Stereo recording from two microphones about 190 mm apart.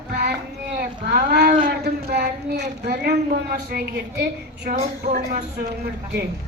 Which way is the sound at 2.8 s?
55° right (ahead or behind).